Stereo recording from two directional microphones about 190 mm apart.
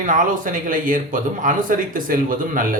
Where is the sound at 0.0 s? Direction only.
45° right (ahead or behind).